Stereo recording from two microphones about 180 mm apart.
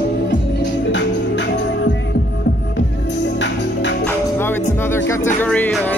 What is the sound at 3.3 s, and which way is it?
Music, 75° left (ahead or behind).